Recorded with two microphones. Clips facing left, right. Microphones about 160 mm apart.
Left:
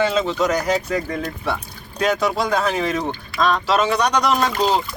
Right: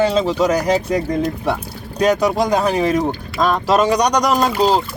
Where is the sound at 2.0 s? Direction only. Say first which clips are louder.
Right 4 dB; 40° right (ahead or behind).